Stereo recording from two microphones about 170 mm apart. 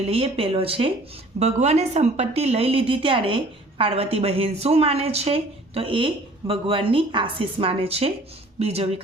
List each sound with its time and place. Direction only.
0.1 s a woman's voice: 35° right (ahead or behind)